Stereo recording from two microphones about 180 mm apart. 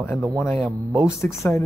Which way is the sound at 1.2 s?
15° left (ahead or behind).